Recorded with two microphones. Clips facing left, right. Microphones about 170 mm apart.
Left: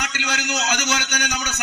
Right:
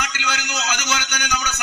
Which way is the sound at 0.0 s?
55° left (ahead or behind).